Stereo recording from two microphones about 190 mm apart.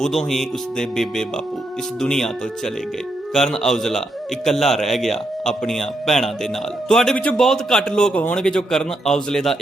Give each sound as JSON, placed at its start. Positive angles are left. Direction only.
{"t": 0.0, "sound": "a man's voice", "side_deg": 0}
{"t": 3.3, "sound": "a man's voice", "side_deg": 0}